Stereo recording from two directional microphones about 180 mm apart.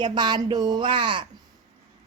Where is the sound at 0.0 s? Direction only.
25° right (ahead or behind).